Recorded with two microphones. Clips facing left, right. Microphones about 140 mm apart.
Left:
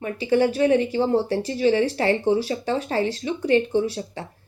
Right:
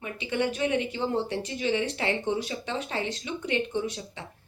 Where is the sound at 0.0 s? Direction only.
35° left (ahead or behind).